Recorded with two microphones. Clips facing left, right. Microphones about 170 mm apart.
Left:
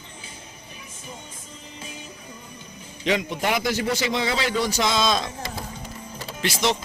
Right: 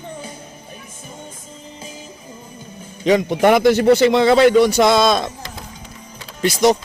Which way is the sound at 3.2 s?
60° right (ahead or behind).